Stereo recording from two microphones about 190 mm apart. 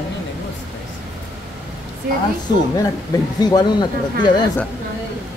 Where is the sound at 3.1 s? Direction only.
20° left (ahead or behind).